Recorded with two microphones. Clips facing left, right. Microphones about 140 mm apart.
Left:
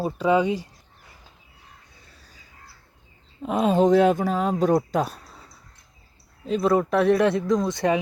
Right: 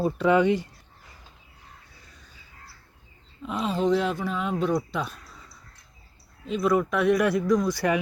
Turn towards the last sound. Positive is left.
turn(degrees=25)  # may be behind; listen again after turning